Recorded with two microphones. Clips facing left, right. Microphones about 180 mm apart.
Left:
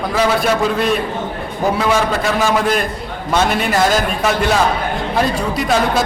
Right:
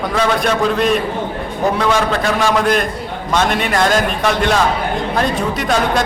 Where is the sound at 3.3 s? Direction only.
5° left (ahead or behind).